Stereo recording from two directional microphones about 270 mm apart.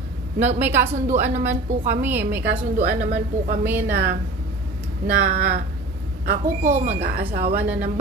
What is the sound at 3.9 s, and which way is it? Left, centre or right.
Speech, right.